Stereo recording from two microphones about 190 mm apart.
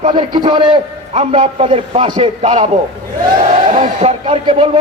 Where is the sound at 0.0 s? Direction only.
25° right (ahead or behind).